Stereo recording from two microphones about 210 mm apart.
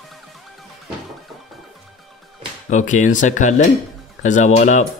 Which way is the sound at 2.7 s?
35° left (ahead or behind).